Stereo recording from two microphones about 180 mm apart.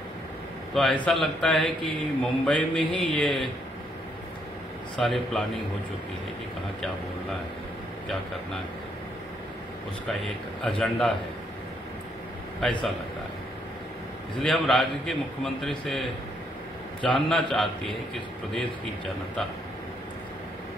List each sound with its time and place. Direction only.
0.7 s a man's voice: 5° left (ahead or behind)
4.9 s a man's voice: centre (ahead or behind)
10.6 s a man's voice: 5° left (ahead or behind)
14.4 s a man's voice: centre (ahead or behind)